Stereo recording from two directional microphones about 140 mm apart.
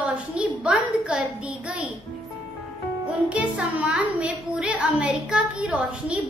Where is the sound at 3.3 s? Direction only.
10° right (ahead or behind).